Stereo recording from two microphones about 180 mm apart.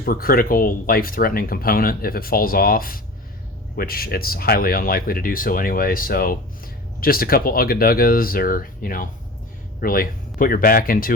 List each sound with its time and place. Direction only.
0.0 s speech: 55° left (ahead or behind)